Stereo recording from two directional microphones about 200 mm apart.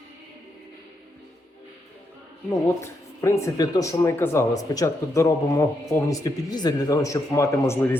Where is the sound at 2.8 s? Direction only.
15° left (ahead or behind).